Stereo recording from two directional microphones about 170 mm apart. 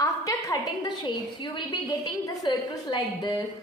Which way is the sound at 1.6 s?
25° left (ahead or behind).